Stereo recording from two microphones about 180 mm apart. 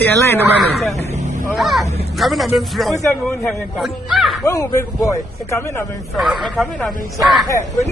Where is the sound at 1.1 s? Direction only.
40° right (ahead or behind).